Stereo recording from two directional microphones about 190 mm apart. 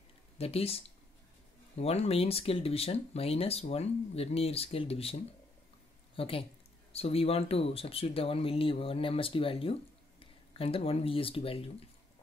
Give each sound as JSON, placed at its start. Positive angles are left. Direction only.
{"t": 0.4, "sound": "speech", "side_deg": 30}
{"t": 6.1, "sound": "speech", "side_deg": 30}